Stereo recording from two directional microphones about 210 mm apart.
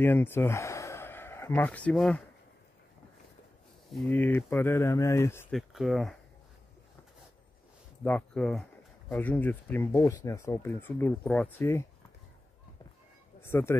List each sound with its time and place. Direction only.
0.0 s speech: 10° left (ahead or behind)
3.9 s speech: 5° left (ahead or behind)
5.6 s speech: centre (ahead or behind)
8.0 s speech: 5° left (ahead or behind)
13.4 s speech: 10° left (ahead or behind)